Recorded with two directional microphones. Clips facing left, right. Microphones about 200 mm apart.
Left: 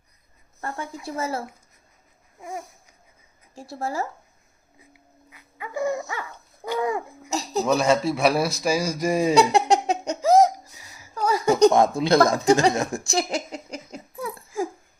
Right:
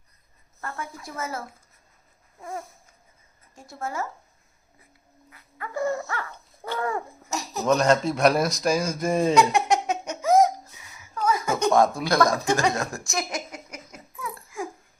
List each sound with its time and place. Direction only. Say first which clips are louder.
0.6 s a sound: left 3 dB; 30° left (ahead or behind)
1.0 s speech: left 6 dB; 30° left (ahead or behind)
2.4 s speech: even; 15° left (ahead or behind)
3.5 s speech: left 3 dB; 35° left (ahead or behind)
5.3 s dog: left 1 dB; 15° left (ahead or behind)
6.7 s speech: left 3 dB; 15° left (ahead or behind)
7.3 s a sound: left 9 dB; 30° left (ahead or behind)
7.6 s speech: even; 5° left (ahead or behind)
9.3 s laughter: left 4 dB; 30° left (ahead or behind)
11.7 s speech: left 2 dB; 25° left (ahead or behind)
13.1 s laughter: left 5 dB; 30° left (ahead or behind)